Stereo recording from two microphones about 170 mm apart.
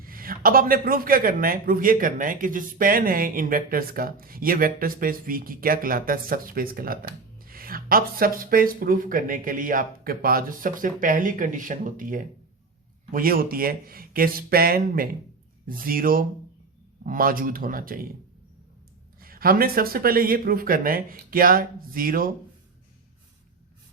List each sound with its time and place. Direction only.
0.0 s a man's voice: 55° right (ahead or behind)
19.2 s a man's voice: 60° right (ahead or behind)